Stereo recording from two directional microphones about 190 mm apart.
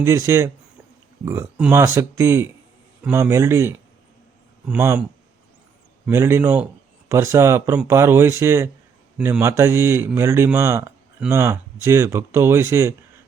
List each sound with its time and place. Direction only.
0.0 s a man's voice: 15° right (ahead or behind)
6.1 s a man's voice: 15° right (ahead or behind)